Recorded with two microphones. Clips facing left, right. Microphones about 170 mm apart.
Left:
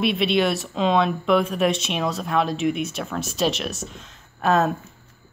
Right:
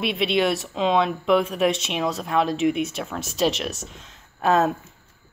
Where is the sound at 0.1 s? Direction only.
20° right (ahead or behind).